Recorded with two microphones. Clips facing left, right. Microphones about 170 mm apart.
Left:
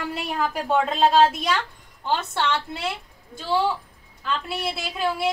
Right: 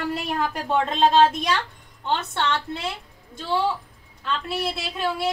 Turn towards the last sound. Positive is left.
turn(degrees=0)  # may be behind; listen again after turning